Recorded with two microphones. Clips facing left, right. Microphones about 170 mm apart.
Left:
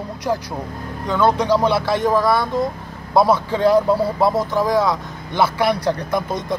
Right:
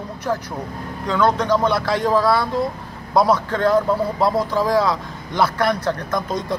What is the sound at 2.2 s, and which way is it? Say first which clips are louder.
A man's voice: even; centre (ahead or behind).